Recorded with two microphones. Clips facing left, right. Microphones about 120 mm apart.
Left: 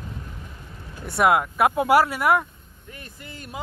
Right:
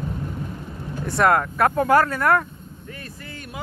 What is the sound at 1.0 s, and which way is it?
Speech, 5° left (ahead or behind).